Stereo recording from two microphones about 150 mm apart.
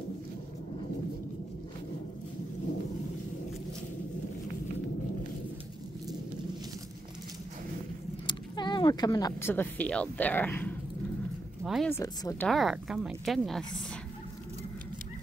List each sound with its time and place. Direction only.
8.3 s a sound: 30° left (ahead or behind)
9.4 s speech: 15° left (ahead or behind)
11.6 s speech: centre (ahead or behind)
11.9 s speech: 20° left (ahead or behind)
12.4 s a woman's voice: centre (ahead or behind)